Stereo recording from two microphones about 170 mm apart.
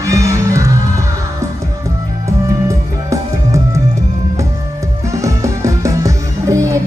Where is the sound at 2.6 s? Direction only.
20° right (ahead or behind).